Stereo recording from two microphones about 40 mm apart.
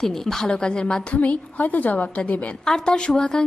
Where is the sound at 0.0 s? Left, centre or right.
Centre.